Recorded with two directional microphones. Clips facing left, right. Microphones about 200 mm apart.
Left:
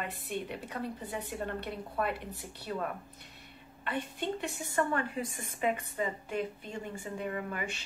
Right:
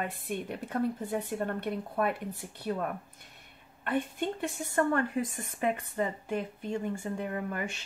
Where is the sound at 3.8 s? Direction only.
50° right (ahead or behind).